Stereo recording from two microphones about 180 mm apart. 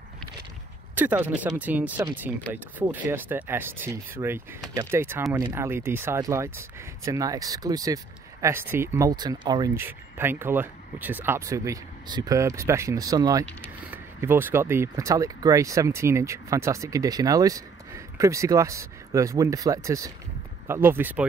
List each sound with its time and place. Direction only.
0.9 s speech: 10° right (ahead or behind)